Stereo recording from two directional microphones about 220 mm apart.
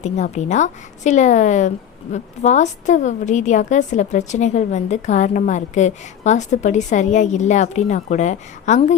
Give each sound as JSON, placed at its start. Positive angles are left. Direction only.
{"t": 0.0, "sound": "a woman's voice", "side_deg": 30}